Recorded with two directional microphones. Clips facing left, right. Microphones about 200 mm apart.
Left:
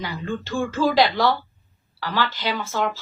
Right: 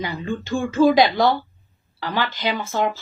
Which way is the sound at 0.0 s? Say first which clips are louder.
Right 2 dB; 15° right (ahead or behind).